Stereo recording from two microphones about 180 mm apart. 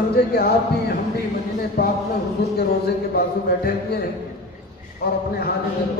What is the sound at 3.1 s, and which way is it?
Speech, 60° left (ahead or behind).